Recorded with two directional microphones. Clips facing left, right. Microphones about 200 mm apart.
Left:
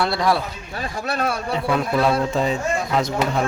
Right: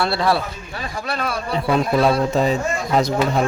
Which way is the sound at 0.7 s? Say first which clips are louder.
Left 2 dB; 45° left (ahead or behind).